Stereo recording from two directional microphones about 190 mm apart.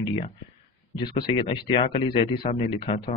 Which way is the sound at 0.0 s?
30° left (ahead or behind).